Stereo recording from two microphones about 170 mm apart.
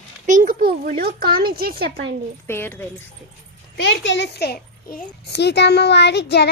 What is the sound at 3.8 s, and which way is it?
A child's voice, 90° left.